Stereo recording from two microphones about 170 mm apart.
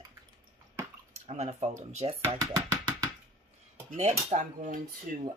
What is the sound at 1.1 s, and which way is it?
Speech, 40° right (ahead or behind).